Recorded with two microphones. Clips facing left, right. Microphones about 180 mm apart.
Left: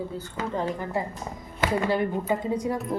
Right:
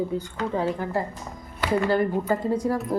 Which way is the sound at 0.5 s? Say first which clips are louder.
Right 3 dB; 5° right (ahead or behind).